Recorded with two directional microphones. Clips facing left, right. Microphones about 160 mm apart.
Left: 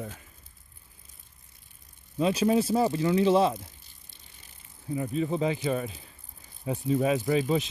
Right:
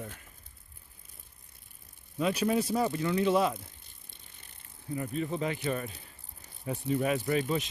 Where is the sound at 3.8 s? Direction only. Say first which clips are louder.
Even; 55° right (ahead or behind).